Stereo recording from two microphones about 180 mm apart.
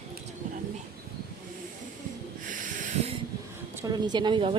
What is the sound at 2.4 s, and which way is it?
Snort, 45° right (ahead or behind).